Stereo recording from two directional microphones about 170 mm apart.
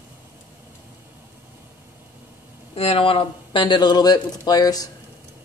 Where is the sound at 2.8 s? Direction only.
35° left (ahead or behind).